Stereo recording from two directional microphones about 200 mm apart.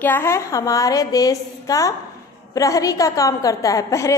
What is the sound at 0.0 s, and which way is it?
A woman's voice, 10° left (ahead or behind).